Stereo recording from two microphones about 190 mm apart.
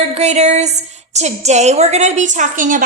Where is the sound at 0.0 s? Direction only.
35° right (ahead or behind).